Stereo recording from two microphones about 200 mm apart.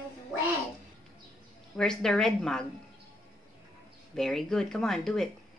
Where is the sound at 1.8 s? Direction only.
5° left (ahead or behind).